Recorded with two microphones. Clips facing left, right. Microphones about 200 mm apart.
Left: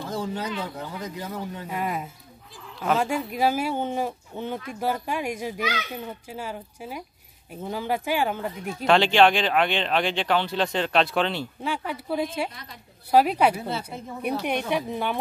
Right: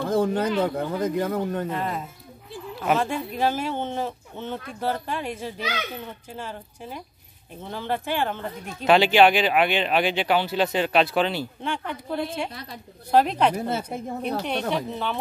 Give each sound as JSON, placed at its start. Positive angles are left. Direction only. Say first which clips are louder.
{"t": 0.0, "sound": "speech", "louder": "right 8 dB", "side_deg": -55}
{"t": 1.7, "sound": "speech", "louder": "right 1 dB", "side_deg": 10}
{"t": 2.7, "sound": "a sound", "louder": "right 1 dB", "side_deg": -5}
{"t": 3.0, "sound": "speech", "louder": "left 1 dB", "side_deg": 10}
{"t": 8.8, "sound": "speech", "louder": "right 2 dB", "side_deg": -5}
{"t": 13.6, "sound": "a woman's voice", "louder": "right 4 dB", "side_deg": -50}
{"t": 14.4, "sound": "speech", "louder": "even", "side_deg": 10}